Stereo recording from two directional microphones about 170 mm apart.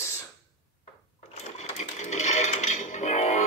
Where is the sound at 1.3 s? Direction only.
40° left (ahead or behind).